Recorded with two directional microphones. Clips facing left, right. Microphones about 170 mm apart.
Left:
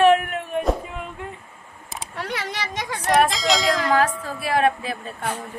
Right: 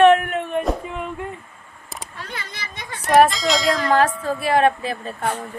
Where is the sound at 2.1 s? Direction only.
75° left (ahead or behind); by 2.9 s 90° left.